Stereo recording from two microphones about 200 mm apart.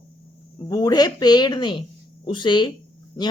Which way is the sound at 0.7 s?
20° left (ahead or behind).